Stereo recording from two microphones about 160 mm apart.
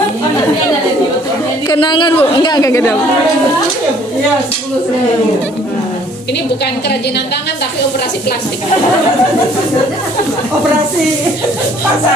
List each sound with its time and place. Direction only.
1.7 s a woman's voice: 30° left (ahead or behind)